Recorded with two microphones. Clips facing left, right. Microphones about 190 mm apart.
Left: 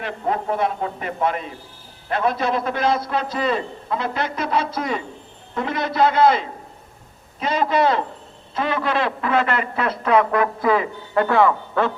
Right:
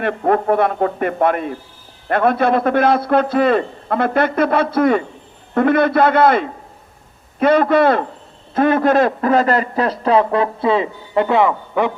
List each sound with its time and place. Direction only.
0.0 s a man's voice: 55° right (ahead or behind); by 11.9 s 15° right (ahead or behind)